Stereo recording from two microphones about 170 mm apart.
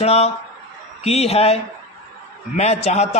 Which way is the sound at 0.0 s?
40° left (ahead or behind).